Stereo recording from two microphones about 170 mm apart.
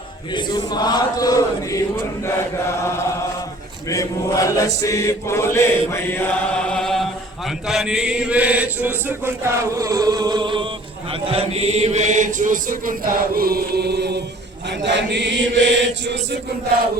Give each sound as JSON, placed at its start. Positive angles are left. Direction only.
{"t": 0.3, "sound": "chant", "side_deg": 25}
{"t": 14.8, "sound": "chant", "side_deg": -90}